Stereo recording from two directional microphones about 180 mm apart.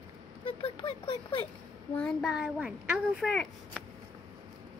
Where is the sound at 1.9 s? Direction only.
Centre (ahead or behind).